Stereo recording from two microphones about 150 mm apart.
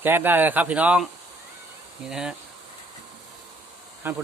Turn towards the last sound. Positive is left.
turn(degrees=-15)  # may be behind; listen again after turning